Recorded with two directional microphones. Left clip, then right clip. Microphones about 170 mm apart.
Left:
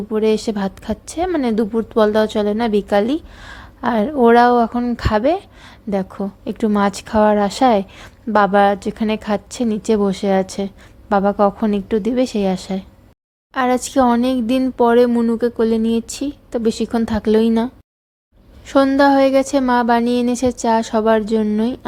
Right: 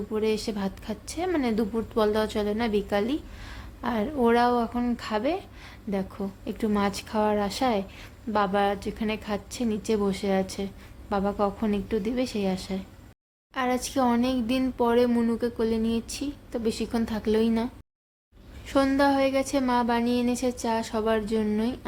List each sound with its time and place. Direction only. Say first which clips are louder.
0.1 s a woman's voice: left 10 dB; 30° left (ahead or behind)
4.9 s a woman's voice: left 14 dB; 35° left (ahead or behind)
18.7 s a woman's voice: left 10 dB; 30° left (ahead or behind)